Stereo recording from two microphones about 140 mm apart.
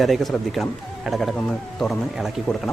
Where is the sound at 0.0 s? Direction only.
Centre (ahead or behind).